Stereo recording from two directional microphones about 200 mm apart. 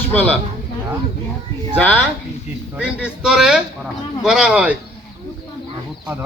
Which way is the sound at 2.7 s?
5° right (ahead or behind).